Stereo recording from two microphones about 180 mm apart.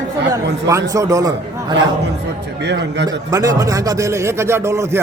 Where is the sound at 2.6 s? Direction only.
75° right (ahead or behind).